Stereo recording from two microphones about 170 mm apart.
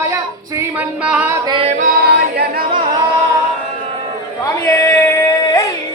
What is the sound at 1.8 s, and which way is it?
Singing, 65° right (ahead or behind).